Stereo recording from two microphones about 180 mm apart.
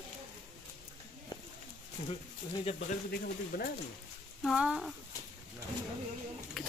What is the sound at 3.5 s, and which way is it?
Speech, 60° left (ahead or behind).